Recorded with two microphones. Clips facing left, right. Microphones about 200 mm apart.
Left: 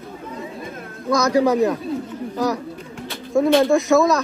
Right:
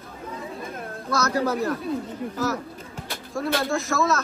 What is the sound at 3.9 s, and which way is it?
Speech, 15° left (ahead or behind).